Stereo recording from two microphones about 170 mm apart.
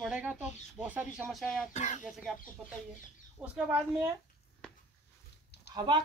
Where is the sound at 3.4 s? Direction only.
10° right (ahead or behind).